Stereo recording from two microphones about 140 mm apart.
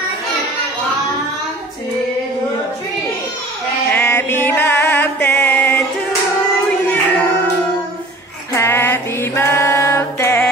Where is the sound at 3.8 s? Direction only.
15° left (ahead or behind).